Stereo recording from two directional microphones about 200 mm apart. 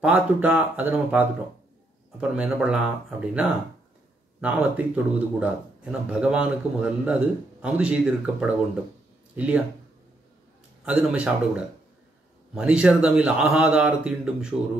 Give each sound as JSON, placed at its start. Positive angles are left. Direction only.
{"t": 0.0, "sound": "speech", "side_deg": -5}
{"t": 10.9, "sound": "speech", "side_deg": -5}